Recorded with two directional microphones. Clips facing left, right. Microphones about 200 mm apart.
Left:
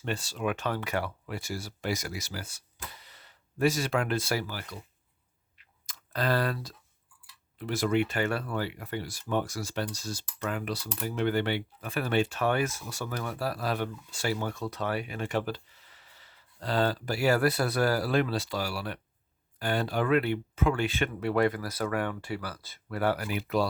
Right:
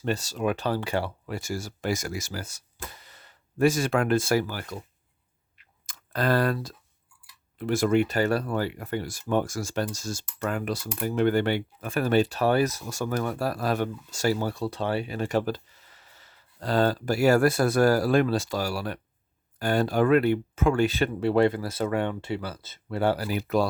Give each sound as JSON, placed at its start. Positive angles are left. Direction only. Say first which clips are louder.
{"t": 0.0, "sound": "speech", "louder": "right 5 dB", "side_deg": -40}
{"t": 1.3, "sound": "speech", "louder": "right 4 dB", "side_deg": -45}
{"t": 5.8, "sound": "speech", "louder": "right 4 dB", "side_deg": -50}